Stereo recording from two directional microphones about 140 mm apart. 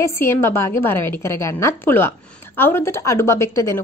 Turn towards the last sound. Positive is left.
turn(degrees=20)  # may be behind; listen again after turning